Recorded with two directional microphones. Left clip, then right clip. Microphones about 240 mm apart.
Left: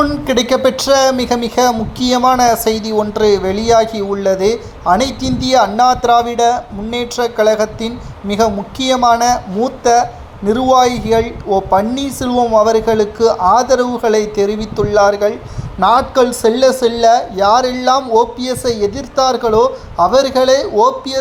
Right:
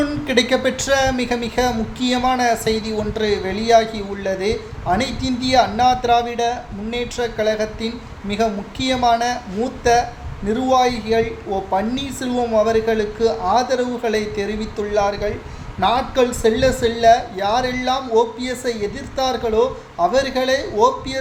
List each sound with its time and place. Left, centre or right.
0.3 s speech: left